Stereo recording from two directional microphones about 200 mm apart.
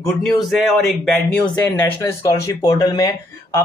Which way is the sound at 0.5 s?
Centre (ahead or behind).